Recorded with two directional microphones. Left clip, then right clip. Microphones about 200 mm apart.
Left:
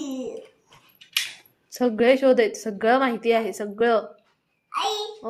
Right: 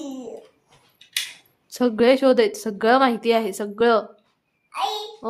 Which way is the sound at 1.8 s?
20° right (ahead or behind).